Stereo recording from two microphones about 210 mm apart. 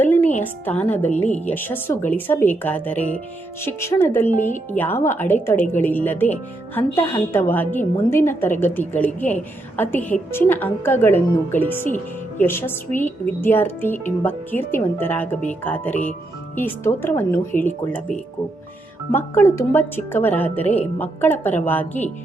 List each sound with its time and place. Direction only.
0.4 s a woman's voice: 10° left (ahead or behind)
4.3 s speech: 35° left (ahead or behind)
4.7 s a woman's voice: 10° left (ahead or behind)
19.1 s a woman's voice: 10° left (ahead or behind)